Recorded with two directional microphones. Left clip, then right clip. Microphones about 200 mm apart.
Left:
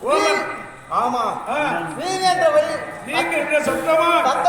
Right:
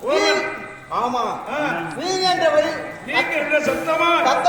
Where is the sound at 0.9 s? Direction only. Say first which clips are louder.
Left 2 dB; centre (ahead or behind).